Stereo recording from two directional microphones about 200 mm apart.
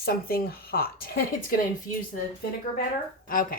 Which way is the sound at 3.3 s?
45° left (ahead or behind).